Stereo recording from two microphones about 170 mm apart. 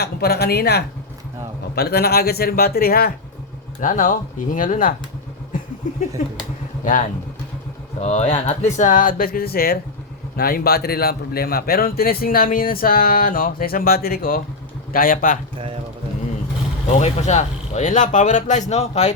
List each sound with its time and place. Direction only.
0.0 s a man's voice: 70° left (ahead or behind)
3.8 s speech: 50° left (ahead or behind)
8.0 s a man's voice: 40° left (ahead or behind)
15.5 s speech: 35° right (ahead or behind)
16.9 s speech: 45° left (ahead or behind)